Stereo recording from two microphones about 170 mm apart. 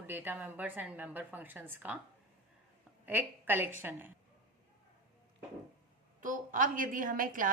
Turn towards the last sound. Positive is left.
turn(degrees=-55)  # may be behind; listen again after turning